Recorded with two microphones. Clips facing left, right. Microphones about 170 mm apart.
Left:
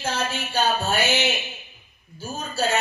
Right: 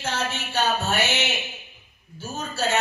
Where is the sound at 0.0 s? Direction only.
10° left (ahead or behind).